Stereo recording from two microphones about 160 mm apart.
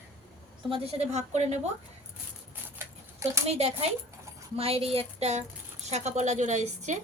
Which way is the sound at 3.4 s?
40° right (ahead or behind).